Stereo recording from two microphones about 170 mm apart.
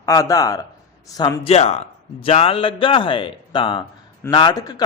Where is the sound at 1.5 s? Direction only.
40° left (ahead or behind).